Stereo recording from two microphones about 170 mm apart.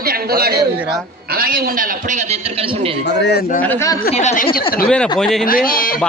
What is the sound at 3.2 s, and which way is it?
Speech, 80° left.